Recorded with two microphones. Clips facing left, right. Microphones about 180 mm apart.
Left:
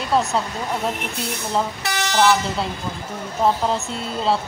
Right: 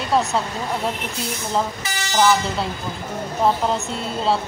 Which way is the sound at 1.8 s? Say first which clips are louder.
Left 3 dB; 65° left (ahead or behind).